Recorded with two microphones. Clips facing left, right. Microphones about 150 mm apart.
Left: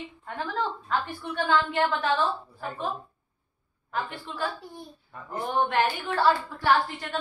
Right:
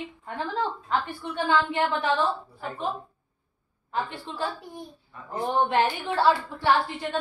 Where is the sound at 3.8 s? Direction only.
25° right (ahead or behind).